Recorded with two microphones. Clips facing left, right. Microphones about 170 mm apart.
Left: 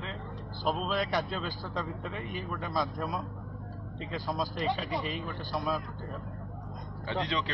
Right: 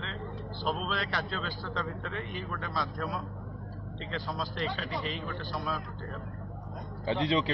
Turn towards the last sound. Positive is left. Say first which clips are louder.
# right 5 dB
turn(degrees=-30)  # may be behind; listen again after turning